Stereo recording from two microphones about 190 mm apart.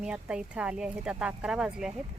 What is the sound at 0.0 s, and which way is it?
Speech, 5° right (ahead or behind).